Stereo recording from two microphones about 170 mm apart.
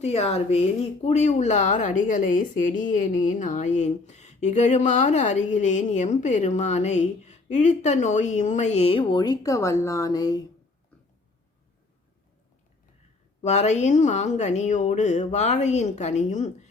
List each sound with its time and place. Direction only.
0.0 s speech: 35° left (ahead or behind)
13.4 s speech: 40° left (ahead or behind)